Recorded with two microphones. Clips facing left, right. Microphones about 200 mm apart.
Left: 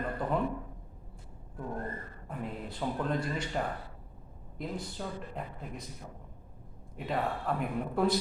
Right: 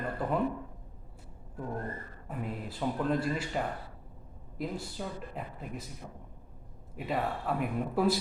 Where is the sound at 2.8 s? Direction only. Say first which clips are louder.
Right 2 dB; 5° right (ahead or behind).